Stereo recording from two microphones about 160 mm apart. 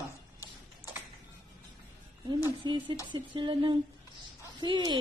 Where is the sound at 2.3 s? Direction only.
30° right (ahead or behind).